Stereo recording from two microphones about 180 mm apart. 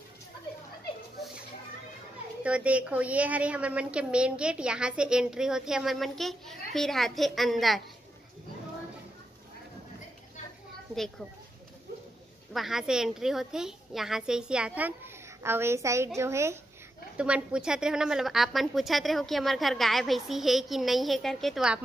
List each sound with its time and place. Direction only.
2.4 s a woman's voice: 5° right (ahead or behind)
12.5 s a woman's voice: centre (ahead or behind)